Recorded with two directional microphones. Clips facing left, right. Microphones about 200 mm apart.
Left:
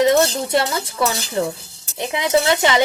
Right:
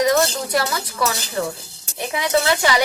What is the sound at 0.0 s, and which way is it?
Speech, 25° left (ahead or behind).